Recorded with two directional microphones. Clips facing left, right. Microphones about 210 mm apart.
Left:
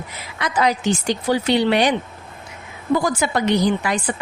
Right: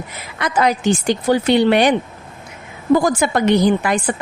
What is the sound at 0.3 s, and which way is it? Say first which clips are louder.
A woman's voice: right 2 dB; 50° right (ahead or behind).